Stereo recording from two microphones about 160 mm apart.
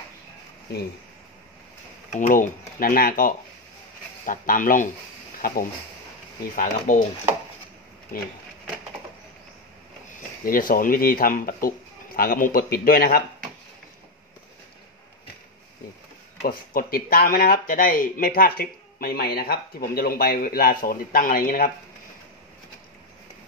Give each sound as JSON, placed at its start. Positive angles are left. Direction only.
{"t": 2.1, "sound": "speech", "side_deg": 55}
{"t": 10.4, "sound": "speech", "side_deg": 60}
{"t": 16.4, "sound": "speech", "side_deg": 65}